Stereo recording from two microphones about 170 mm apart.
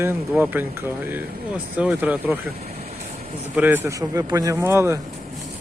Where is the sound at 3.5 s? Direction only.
10° right (ahead or behind).